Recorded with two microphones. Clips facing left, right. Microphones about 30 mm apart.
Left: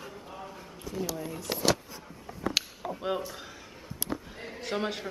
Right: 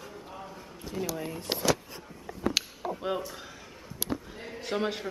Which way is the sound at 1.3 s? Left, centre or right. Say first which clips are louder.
Right 1 dB; right.